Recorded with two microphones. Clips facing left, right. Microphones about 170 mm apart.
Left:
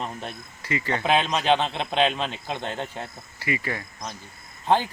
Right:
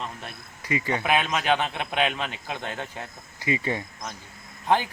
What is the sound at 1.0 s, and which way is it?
Speech, 20° left (ahead or behind).